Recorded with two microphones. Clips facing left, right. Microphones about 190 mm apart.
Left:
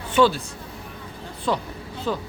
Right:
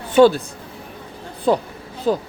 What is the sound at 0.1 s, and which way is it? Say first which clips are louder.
Speech: right 6 dB; 45° right (ahead or behind).